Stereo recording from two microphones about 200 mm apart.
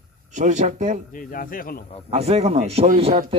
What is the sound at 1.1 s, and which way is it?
Speech, 45° left (ahead or behind).